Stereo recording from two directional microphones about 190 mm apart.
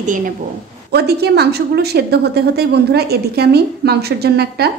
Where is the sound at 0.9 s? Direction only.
60° right (ahead or behind).